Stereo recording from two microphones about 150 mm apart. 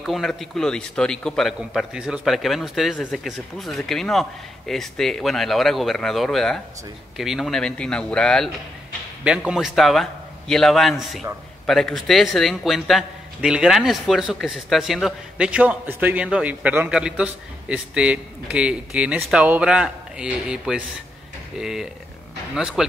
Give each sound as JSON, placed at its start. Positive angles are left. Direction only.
{"t": 0.0, "sound": "a man's voice", "side_deg": 0}
{"t": 9.2, "sound": "a man's voice", "side_deg": -5}